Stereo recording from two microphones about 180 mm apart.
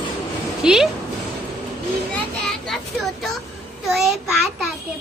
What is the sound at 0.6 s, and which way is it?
Speech, 5° right (ahead or behind).